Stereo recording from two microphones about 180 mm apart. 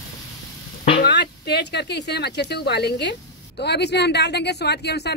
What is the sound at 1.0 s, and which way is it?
Speech, 65° left (ahead or behind).